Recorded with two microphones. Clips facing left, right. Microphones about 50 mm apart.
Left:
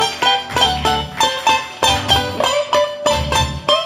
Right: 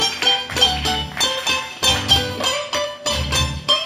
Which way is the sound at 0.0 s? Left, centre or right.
Left.